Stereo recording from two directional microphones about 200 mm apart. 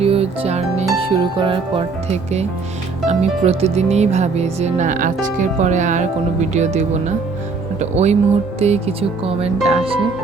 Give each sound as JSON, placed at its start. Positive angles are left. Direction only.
{"t": 0.0, "sound": "music", "side_deg": -30}
{"t": 0.9, "sound": "speech", "side_deg": -25}